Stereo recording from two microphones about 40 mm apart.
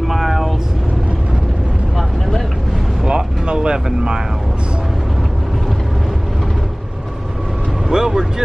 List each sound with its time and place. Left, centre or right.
0.1 s vehicle: centre
3.1 s vehicle: centre
7.9 s speech: centre